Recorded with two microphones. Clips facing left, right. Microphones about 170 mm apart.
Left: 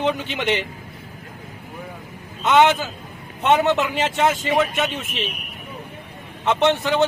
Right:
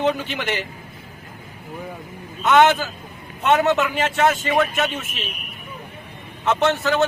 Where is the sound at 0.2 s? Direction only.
20° left (ahead or behind).